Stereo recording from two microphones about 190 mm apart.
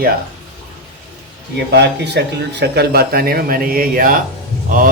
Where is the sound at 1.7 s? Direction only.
60° right (ahead or behind).